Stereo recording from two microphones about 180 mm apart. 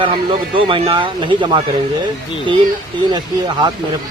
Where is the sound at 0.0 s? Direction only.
25° right (ahead or behind).